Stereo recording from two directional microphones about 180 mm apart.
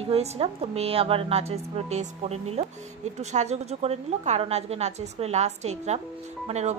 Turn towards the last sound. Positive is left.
turn(degrees=-40)  # may be behind; listen again after turning